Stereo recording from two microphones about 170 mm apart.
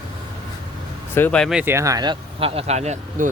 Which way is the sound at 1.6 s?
15° right (ahead or behind).